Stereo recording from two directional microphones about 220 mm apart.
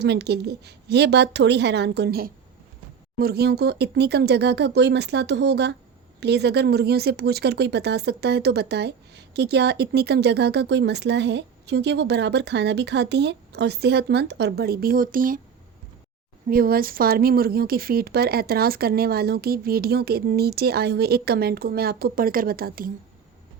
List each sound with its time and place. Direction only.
0.0 s speech: 50° right (ahead or behind)
16.5 s speech: 40° right (ahead or behind)